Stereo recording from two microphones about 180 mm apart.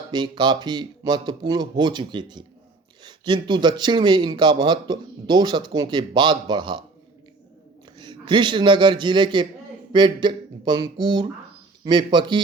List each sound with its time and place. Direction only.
0.1 s speech: 25° right (ahead or behind)
7.9 s a man's voice: 25° right (ahead or behind)